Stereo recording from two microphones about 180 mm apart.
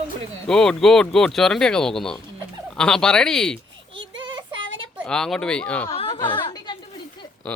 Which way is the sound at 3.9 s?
90° right.